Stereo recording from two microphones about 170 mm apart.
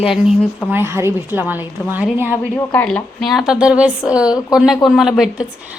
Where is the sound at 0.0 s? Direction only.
5° right (ahead or behind).